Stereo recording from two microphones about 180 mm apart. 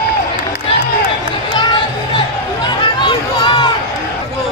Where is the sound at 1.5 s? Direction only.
25° left (ahead or behind).